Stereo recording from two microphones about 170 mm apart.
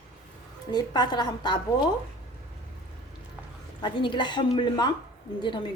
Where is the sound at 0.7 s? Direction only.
25° left (ahead or behind).